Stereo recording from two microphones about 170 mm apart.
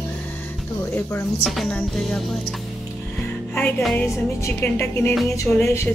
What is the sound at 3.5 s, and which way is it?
Music, 10° left (ahead or behind).